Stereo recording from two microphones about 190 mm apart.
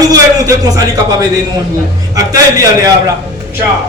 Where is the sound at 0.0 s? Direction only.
20° right (ahead or behind).